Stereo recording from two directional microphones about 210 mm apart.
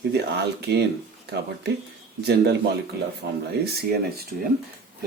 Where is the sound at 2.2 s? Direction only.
50° right (ahead or behind).